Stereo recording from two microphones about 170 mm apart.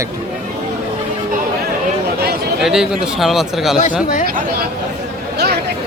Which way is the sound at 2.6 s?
Centre (ahead or behind).